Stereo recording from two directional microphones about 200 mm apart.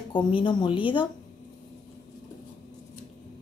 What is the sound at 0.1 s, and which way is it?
Speech, 25° left (ahead or behind).